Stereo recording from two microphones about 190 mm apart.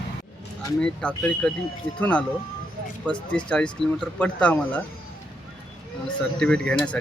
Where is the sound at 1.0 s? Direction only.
5° left (ahead or behind).